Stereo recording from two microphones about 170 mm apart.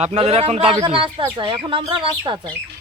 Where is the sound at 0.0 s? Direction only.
40° right (ahead or behind).